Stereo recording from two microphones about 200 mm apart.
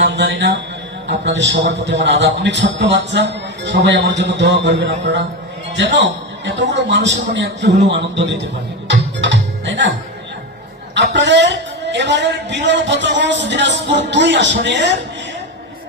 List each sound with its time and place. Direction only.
0.0 s a man's voice: 65° right (ahead or behind)
8.9 s music: 65° right (ahead or behind)
10.9 s a man's voice: 65° right (ahead or behind)